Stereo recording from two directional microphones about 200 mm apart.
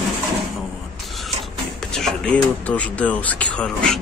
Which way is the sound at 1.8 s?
Centre (ahead or behind).